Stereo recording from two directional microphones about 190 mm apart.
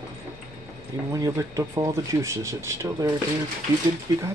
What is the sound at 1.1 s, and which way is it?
Speech, 15° right (ahead or behind).